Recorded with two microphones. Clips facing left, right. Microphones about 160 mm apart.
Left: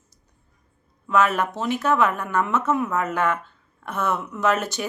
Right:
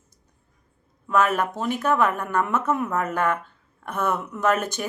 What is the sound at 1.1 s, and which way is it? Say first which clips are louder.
Speech: left 1 dB; 50° right (ahead or behind).